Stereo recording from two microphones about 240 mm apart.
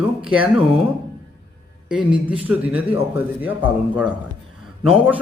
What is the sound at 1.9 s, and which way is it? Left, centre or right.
A man's voice, centre.